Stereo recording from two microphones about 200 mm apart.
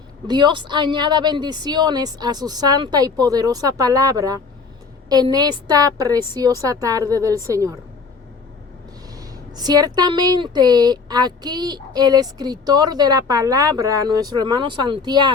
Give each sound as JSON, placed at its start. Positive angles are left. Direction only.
{"t": 0.3, "sound": "a woman's voice", "side_deg": -20}
{"t": 9.6, "sound": "a woman's voice", "side_deg": -20}